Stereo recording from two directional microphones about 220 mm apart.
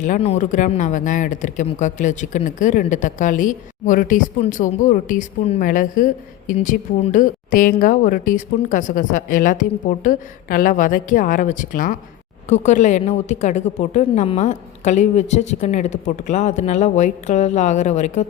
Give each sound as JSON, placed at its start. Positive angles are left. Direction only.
{"t": 0.0, "sound": "speech", "side_deg": 30}